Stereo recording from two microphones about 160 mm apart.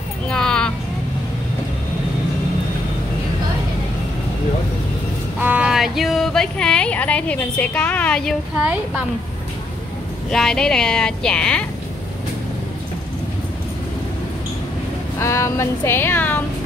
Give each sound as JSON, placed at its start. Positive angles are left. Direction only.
{"t": 0.3, "sound": "a sound", "side_deg": 5}
{"t": 5.4, "sound": "a woman's voice", "side_deg": -10}
{"t": 10.3, "sound": "a woman's voice", "side_deg": 5}
{"t": 15.1, "sound": "speech", "side_deg": 20}